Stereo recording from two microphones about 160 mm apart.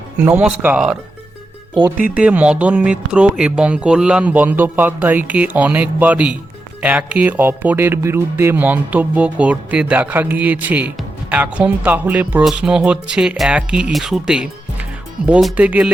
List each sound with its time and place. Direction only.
0.2 s speech: 10° right (ahead or behind)
2.1 s speech: 10° right (ahead or behind)